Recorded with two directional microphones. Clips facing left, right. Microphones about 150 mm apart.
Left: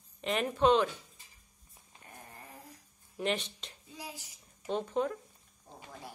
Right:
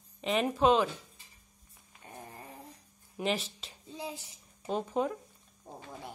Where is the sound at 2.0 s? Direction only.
25° right (ahead or behind).